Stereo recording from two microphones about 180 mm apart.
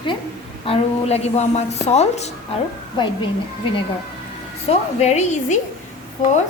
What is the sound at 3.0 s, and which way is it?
Speech, 25° left (ahead or behind).